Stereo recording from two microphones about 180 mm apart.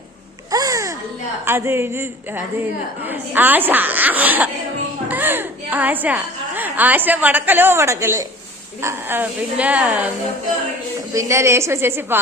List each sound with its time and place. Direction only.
0.5 s babbling: 20° right (ahead or behind)
1.5 s a woman's voice: 15° right (ahead or behind)
11.1 s speech: 15° right (ahead or behind)